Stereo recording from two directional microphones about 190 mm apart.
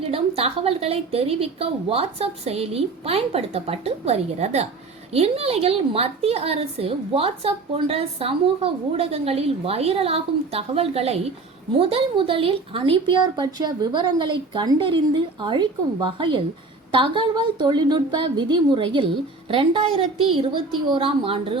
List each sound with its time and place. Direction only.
0.0 s a woman's voice: 30° right (ahead or behind)